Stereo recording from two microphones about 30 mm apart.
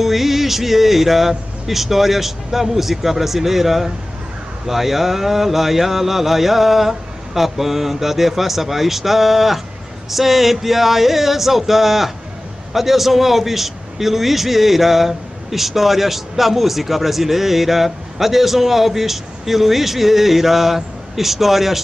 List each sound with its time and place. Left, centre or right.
0.0 s a man's voice: centre